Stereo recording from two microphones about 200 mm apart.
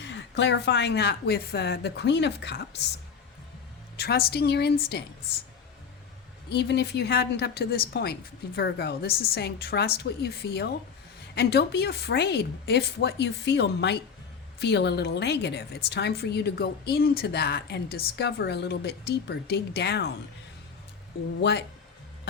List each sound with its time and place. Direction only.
0.0 s a woman's voice: 60° left (ahead or behind)
3.9 s a woman's voice: 50° left (ahead or behind)
6.5 s a woman's voice: 55° left (ahead or behind)